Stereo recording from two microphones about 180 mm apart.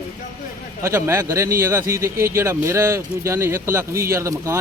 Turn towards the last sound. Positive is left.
turn(degrees=-15)  # may be behind; listen again after turning